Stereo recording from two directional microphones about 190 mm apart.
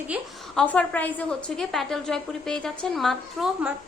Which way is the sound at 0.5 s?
5° left (ahead or behind).